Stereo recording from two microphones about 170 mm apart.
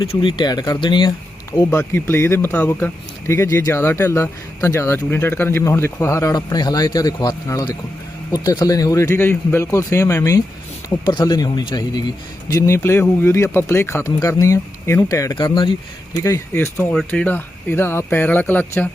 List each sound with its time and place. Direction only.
0.0 s speech: 30° left (ahead or behind)
1.8 s speech: 10° left (ahead or behind); by 15.7 s 25° left (ahead or behind)
16.2 s speech: 15° left (ahead or behind)